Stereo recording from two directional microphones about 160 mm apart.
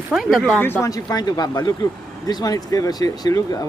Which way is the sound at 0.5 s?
15° left (ahead or behind).